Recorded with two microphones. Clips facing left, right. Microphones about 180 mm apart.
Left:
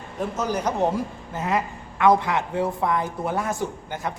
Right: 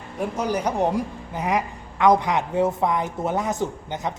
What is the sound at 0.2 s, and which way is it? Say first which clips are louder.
A man's voice: right 1 dB; 10° right (ahead or behind).